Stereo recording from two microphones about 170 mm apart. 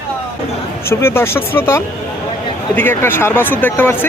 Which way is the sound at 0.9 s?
15° left (ahead or behind).